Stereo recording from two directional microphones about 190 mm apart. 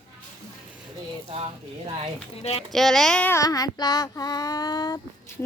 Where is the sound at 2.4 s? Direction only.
35° left (ahead or behind).